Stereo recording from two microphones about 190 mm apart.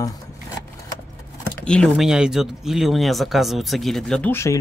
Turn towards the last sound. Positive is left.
turn(degrees=10)  # may be behind; listen again after turning